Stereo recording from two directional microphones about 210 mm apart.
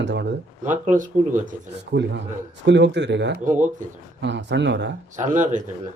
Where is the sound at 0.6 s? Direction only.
40° right (ahead or behind).